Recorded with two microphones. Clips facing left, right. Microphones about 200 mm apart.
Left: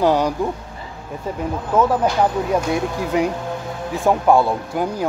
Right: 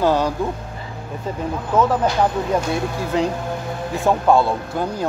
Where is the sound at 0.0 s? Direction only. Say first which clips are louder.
Left 1 dB; 15° left (ahead or behind).